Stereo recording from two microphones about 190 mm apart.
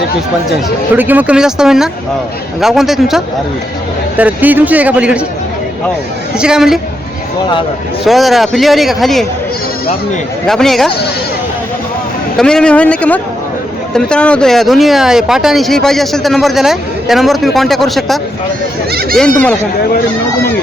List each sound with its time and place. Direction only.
0.9 s a man's voice: 10° right (ahead or behind)
6.4 s speech: 5° right (ahead or behind)
8.0 s speech: centre (ahead or behind)
10.4 s speech: centre (ahead or behind)
12.4 s a man's voice: 5° left (ahead or behind)